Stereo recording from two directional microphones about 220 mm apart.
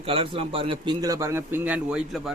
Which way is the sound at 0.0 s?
25° right (ahead or behind).